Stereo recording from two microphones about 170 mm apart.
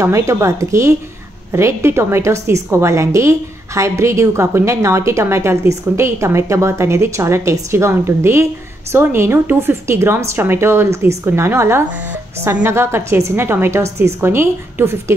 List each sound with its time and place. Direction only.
0.0 s a woman's voice: 20° right (ahead or behind)